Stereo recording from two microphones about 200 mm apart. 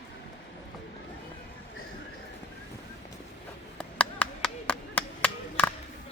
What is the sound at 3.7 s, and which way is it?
Chop, 5° left (ahead or behind).